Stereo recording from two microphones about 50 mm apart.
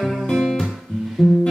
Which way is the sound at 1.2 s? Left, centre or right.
Centre.